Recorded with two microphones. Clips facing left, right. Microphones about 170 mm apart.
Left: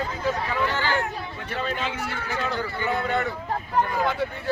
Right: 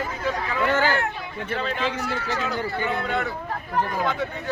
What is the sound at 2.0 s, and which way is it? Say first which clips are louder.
Speech: right 2 dB; centre (ahead or behind).